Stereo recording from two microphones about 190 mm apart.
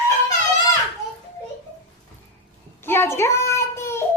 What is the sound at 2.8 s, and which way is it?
Child singing, 10° left (ahead or behind).